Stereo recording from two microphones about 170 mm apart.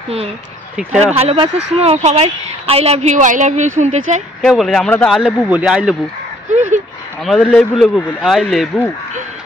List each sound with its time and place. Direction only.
1.1 s a woman's voice: 35° right (ahead or behind)
4.4 s a man's voice: centre (ahead or behind)
6.5 s a sound: 45° right (ahead or behind)
7.2 s a man's voice: centre (ahead or behind)